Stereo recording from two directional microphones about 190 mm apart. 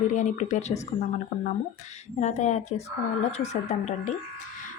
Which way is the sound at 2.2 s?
40° left (ahead or behind).